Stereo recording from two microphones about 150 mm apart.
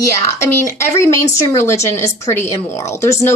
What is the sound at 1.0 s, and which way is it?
A woman's voice, 20° left (ahead or behind).